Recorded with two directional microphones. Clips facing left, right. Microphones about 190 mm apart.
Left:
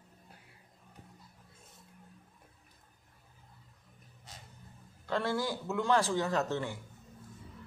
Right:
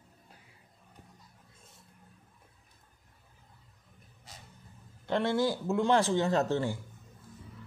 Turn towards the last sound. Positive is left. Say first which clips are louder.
# right 4 dB
turn(degrees=-30)  # may be behind; listen again after turning